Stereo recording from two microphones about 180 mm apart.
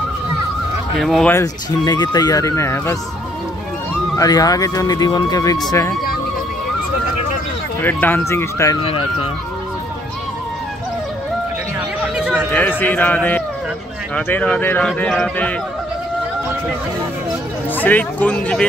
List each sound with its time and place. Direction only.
0.9 s speech: centre (ahead or behind)
1.3 s speech: 20° left (ahead or behind)
4.2 s speech: 20° left (ahead or behind)
7.8 s speech: 10° left (ahead or behind)
8.8 s speech: 30° left (ahead or behind)
12.5 s speech: 10° left (ahead or behind)
17.7 s speech: 10° left (ahead or behind)